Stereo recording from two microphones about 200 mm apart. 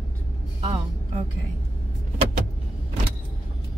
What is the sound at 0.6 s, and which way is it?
Speech, 30° right (ahead or behind).